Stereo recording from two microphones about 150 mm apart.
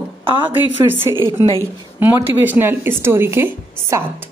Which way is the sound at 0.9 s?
15° right (ahead or behind).